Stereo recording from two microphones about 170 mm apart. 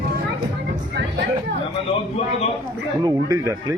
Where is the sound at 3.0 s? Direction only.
20° right (ahead or behind).